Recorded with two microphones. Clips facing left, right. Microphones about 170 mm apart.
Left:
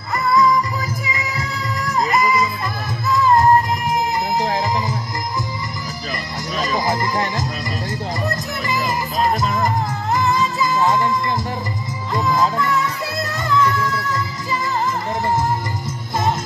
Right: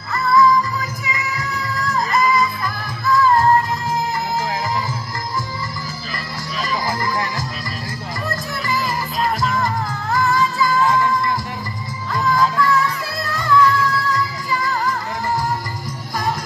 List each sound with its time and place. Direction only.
0.1 s music: 20° left (ahead or behind)
1.8 s music: 20° left (ahead or behind)
6.9 s music: 20° left (ahead or behind)
8.6 s music: 20° left (ahead or behind)
10.1 s music: 20° left (ahead or behind)